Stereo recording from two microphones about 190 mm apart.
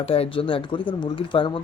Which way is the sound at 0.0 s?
30° left (ahead or behind).